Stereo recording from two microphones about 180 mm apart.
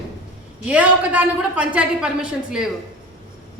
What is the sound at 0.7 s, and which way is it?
A woman's voice, 10° right (ahead or behind).